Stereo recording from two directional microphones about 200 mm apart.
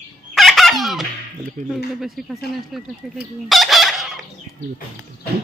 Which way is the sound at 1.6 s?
35° right (ahead or behind).